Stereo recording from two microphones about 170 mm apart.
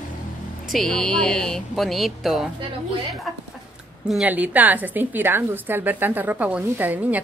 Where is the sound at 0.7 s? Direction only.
5° left (ahead or behind).